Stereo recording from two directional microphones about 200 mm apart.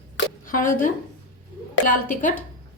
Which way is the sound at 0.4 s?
45° left (ahead or behind).